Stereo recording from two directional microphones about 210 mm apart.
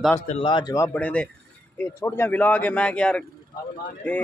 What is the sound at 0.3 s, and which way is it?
Speech, 25° left (ahead or behind).